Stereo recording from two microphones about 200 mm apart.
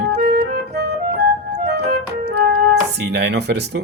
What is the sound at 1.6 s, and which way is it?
Music, 50° right (ahead or behind).